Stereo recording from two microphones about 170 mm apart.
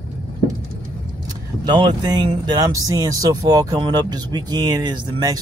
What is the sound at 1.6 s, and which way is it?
Speech, 25° right (ahead or behind).